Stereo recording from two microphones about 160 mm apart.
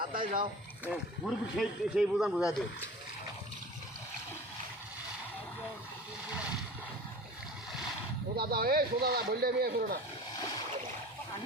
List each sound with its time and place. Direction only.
0.1 s speech: 60° right (ahead or behind)
0.9 s speech: centre (ahead or behind)
8.4 s speech: 70° right (ahead or behind)